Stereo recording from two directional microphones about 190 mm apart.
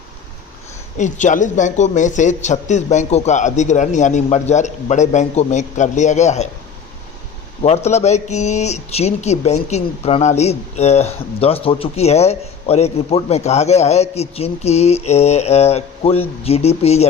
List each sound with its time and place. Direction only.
0.9 s speech: 40° left (ahead or behind)
7.6 s speech: 35° left (ahead or behind)